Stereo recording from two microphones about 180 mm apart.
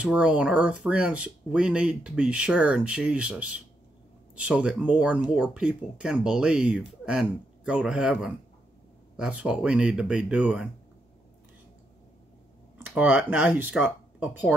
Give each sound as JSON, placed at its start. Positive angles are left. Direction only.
{"t": 0.0, "sound": "speech", "side_deg": -5}
{"t": 12.8, "sound": "speech", "side_deg": -5}